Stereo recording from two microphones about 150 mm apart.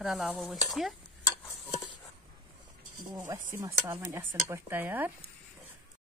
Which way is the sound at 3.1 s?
15° right (ahead or behind).